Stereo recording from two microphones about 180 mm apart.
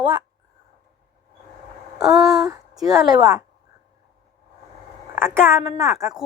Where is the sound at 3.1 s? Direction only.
20° right (ahead or behind).